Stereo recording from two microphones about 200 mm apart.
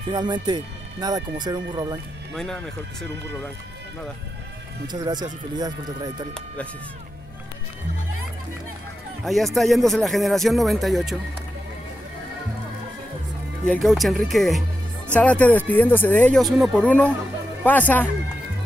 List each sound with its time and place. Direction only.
0.1 s speech: 20° right (ahead or behind)
2.3 s speech: centre (ahead or behind)
4.8 s speech: 20° right (ahead or behind)
9.2 s speech: centre (ahead or behind)
13.7 s speech: centre (ahead or behind)